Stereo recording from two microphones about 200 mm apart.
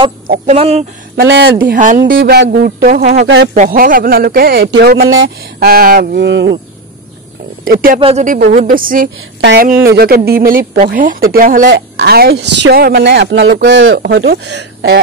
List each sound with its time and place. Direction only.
0.3 s speech: 35° right (ahead or behind)
1.1 s speech: 55° right (ahead or behind)
1.7 s speech: 45° right (ahead or behind); by 6.5 s 60° right (ahead or behind)
7.7 s speech: 45° right (ahead or behind)
8.0 s speech: 35° right (ahead or behind)
8.6 s speech: 45° right (ahead or behind)